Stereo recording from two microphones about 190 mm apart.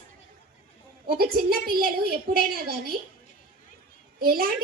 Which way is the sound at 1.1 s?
50° right (ahead or behind).